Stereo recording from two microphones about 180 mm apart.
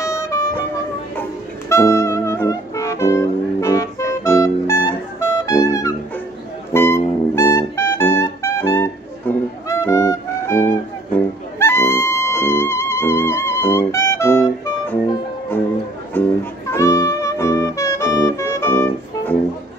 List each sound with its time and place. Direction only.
0.0 s music: 15° left (ahead or behind)
1.7 s music: 15° left (ahead or behind)